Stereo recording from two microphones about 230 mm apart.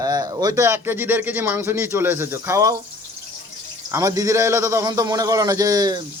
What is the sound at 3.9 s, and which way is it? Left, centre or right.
Speech, centre.